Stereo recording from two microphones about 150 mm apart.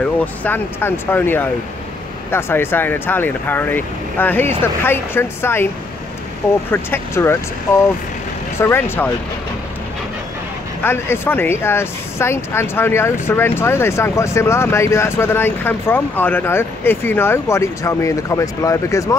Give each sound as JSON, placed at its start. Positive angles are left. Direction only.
{"t": 0.0, "sound": "speech", "side_deg": 10}
{"t": 6.7, "sound": "speech", "side_deg": 15}
{"t": 8.5, "sound": "speech", "side_deg": 15}
{"t": 10.8, "sound": "speech", "side_deg": 15}